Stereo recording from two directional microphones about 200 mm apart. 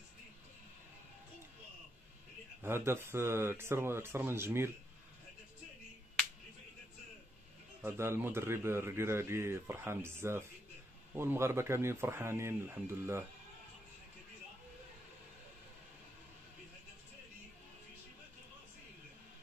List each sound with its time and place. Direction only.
2.6 s a man's voice: 10° right (ahead or behind)
7.8 s a man's voice: 10° right (ahead or behind)